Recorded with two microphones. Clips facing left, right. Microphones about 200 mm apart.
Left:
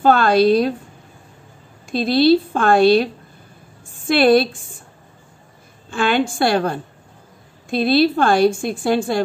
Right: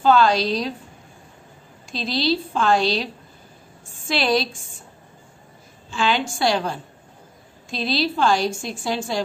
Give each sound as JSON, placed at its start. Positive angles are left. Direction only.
{"t": 0.0, "sound": "a woman's voice", "side_deg": 55}
{"t": 1.9, "sound": "a woman's voice", "side_deg": 55}
{"t": 4.1, "sound": "a woman's voice", "side_deg": 55}
{"t": 5.9, "sound": "a woman's voice", "side_deg": 55}